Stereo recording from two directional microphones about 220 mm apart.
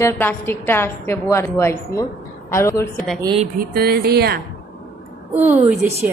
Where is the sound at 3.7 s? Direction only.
45° right (ahead or behind).